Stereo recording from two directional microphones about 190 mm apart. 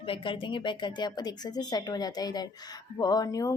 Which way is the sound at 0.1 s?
25° left (ahead or behind).